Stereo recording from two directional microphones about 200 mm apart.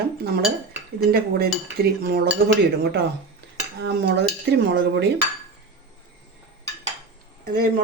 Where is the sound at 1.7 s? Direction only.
50° right (ahead or behind).